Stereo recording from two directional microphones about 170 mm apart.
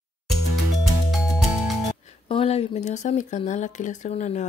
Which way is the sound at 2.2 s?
35° left (ahead or behind).